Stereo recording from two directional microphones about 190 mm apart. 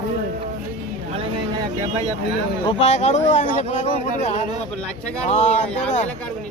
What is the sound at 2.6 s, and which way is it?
Speech, 35° left (ahead or behind).